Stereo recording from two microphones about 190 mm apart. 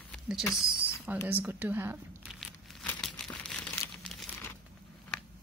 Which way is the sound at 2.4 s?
Centre (ahead or behind).